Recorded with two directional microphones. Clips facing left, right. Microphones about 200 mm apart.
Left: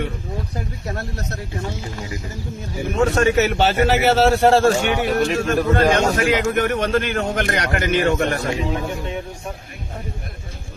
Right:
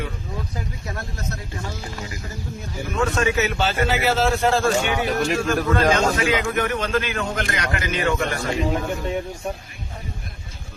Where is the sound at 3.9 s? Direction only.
70° left (ahead or behind).